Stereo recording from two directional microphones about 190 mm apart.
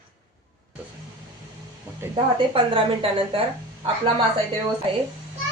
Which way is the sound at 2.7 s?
30° right (ahead or behind).